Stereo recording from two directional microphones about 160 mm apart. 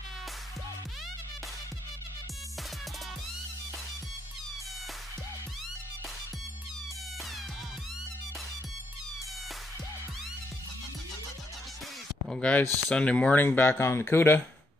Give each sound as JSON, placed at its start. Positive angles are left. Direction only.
{"t": 12.3, "sound": "speech", "side_deg": 10}